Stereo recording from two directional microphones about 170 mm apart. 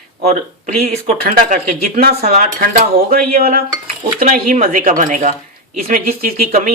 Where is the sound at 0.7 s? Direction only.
60° right (ahead or behind).